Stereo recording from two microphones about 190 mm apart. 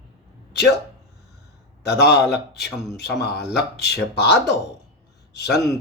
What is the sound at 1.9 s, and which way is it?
Speech, 60° left (ahead or behind).